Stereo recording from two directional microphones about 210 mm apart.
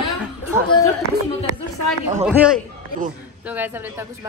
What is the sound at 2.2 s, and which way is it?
A man's voice, 5° right (ahead or behind).